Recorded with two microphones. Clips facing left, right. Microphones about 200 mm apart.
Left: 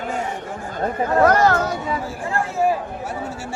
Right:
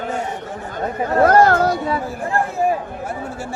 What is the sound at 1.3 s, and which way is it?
Speech, 55° right (ahead or behind).